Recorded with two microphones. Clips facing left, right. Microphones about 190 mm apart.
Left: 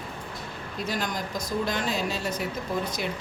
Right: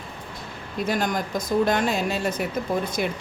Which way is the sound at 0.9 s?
50° right (ahead or behind).